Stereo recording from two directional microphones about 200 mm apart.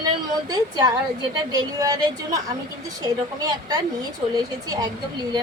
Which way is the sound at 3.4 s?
20° right (ahead or behind).